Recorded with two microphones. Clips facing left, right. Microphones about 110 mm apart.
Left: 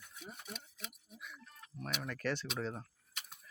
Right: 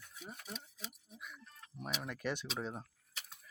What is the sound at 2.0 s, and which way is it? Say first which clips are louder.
Speech: left 3 dB; 15° right (ahead or behind).